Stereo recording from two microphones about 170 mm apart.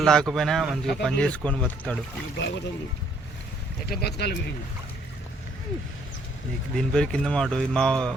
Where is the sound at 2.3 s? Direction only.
90° left.